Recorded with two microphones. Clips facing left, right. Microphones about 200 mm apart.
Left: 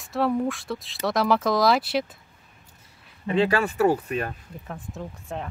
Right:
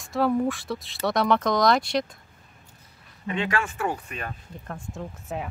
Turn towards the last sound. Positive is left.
turn(degrees=0)  # may be behind; listen again after turning